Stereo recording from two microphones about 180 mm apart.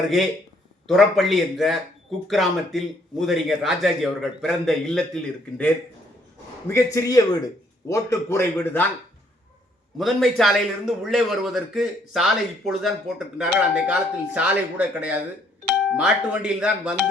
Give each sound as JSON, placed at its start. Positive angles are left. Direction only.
{"t": 0.9, "sound": "a man's voice", "side_deg": 0}
{"t": 6.7, "sound": "a man's voice", "side_deg": 20}
{"t": 10.0, "sound": "a man's voice", "side_deg": 0}